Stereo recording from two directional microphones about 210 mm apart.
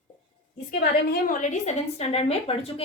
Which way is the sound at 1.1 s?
40° left (ahead or behind).